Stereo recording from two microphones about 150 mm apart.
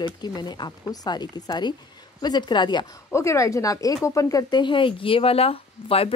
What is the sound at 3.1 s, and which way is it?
Speech, 20° left (ahead or behind).